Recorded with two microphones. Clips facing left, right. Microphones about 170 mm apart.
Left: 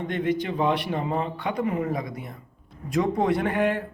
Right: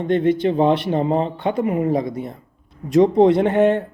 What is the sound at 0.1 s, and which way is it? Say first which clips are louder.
Speech: right 10 dB; 25° right (ahead or behind).